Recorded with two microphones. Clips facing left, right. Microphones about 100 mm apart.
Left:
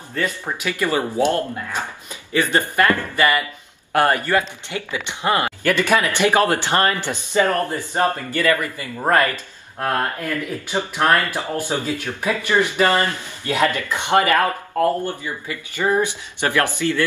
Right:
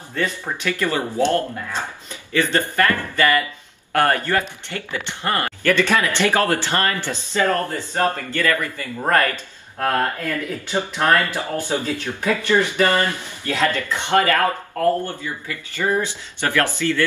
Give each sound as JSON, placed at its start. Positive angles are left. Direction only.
{"t": 0.1, "sound": "speech", "side_deg": 10}
{"t": 10.7, "sound": "speech", "side_deg": 15}